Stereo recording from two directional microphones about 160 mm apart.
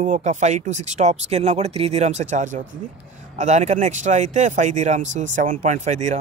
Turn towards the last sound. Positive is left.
turn(degrees=-50)  # may be behind; listen again after turning